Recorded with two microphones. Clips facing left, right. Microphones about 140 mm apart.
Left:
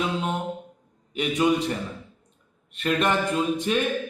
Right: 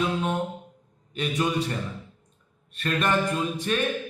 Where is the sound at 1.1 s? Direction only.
15° left (ahead or behind).